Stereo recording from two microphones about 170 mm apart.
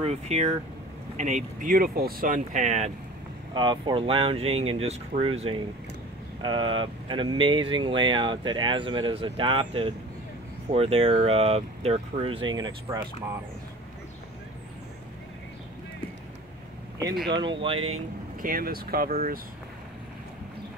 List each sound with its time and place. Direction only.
0.0 s speech: 40° right (ahead or behind)
3.5 s speech: 25° right (ahead or behind)
17.3 s speech: 30° right (ahead or behind)
18.4 s speech: 55° right (ahead or behind)